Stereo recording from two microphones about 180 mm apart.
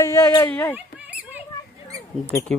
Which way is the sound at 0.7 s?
10° right (ahead or behind).